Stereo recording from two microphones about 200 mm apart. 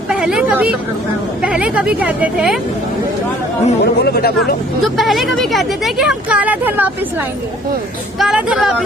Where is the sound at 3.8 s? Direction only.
55° left (ahead or behind).